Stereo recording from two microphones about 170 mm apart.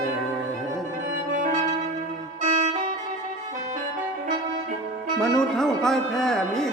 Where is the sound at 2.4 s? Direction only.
50° right (ahead or behind).